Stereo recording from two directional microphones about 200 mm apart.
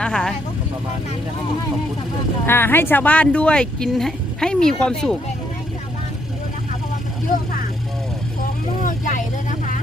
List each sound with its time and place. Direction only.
0.0 s vehicle: 5° left (ahead or behind)
2.5 s speech: 10° left (ahead or behind)
8.8 s vehicle: 40° left (ahead or behind)